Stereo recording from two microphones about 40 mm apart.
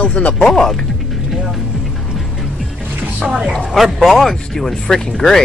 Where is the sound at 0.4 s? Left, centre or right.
Centre.